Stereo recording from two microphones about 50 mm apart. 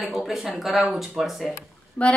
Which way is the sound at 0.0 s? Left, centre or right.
Centre.